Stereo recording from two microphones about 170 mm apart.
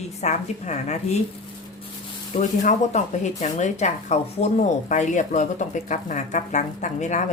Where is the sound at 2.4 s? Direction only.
50° left (ahead or behind).